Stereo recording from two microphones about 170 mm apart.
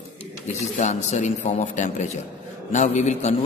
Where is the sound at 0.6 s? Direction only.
40° left (ahead or behind).